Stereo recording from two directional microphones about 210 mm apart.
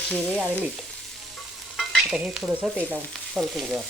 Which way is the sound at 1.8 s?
Centre (ahead or behind).